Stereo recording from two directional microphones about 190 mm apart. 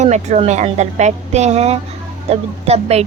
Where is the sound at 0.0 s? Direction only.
35° right (ahead or behind).